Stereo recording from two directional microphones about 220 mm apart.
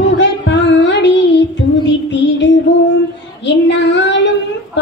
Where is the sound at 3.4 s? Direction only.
55° left (ahead or behind).